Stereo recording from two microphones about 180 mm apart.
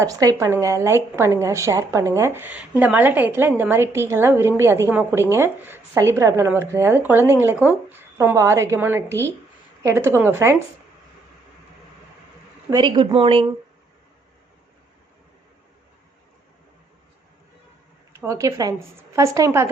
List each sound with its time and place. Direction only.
0.0 s a woman's voice: 20° right (ahead or behind)
12.7 s speech: 25° right (ahead or behind)
18.1 s a woman's voice: 15° right (ahead or behind)